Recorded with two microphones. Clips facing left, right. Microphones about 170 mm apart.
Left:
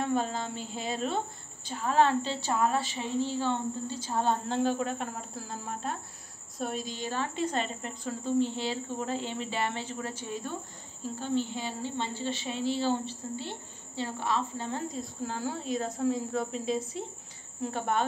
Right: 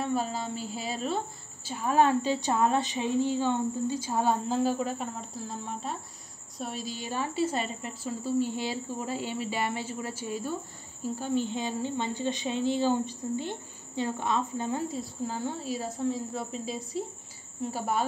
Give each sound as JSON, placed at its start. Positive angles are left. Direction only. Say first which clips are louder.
{"t": 0.0, "sound": "a woman's voice", "louder": "even", "side_deg": -5}
{"t": 2.5, "sound": "a woman's voice", "louder": "even", "side_deg": -25}
{"t": 14.9, "sound": "a woman's voice", "louder": "right 2 dB", "side_deg": -5}